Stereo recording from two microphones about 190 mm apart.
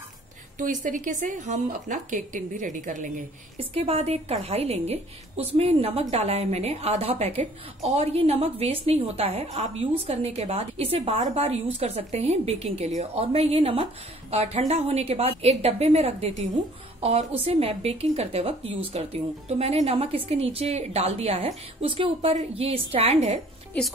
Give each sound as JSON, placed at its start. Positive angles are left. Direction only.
{"t": 0.6, "sound": "a woman's voice", "side_deg": -40}